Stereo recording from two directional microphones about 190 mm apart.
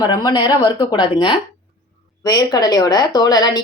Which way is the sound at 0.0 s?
20° left (ahead or behind).